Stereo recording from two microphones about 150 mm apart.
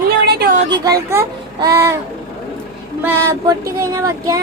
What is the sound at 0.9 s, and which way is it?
Speech, 20° right (ahead or behind).